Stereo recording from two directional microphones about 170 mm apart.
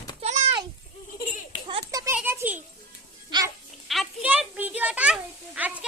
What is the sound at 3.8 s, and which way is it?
Children playing, centre (ahead or behind).